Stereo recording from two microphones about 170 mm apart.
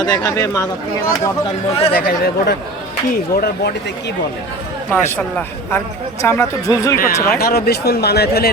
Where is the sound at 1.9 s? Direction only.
65° left (ahead or behind).